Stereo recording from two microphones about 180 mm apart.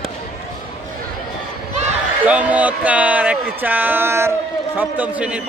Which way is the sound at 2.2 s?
10° right (ahead or behind).